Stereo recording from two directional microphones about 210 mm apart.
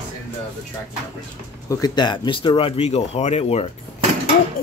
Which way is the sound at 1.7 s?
20° left (ahead or behind).